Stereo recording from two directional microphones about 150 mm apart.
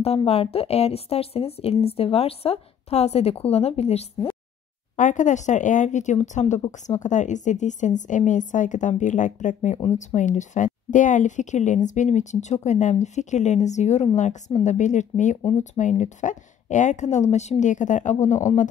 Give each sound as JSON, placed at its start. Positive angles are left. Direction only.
{"t": 0.0, "sound": "a woman's voice", "side_deg": 40}
{"t": 4.9, "sound": "a woman's voice", "side_deg": 55}